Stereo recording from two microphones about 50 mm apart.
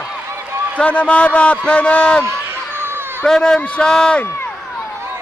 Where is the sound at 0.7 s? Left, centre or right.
Left.